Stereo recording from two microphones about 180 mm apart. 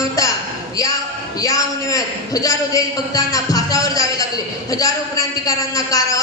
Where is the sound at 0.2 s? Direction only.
20° left (ahead or behind).